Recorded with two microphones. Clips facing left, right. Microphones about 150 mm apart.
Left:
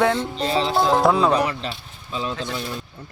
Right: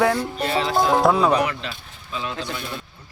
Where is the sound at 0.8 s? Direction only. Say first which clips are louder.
Even; centre (ahead or behind).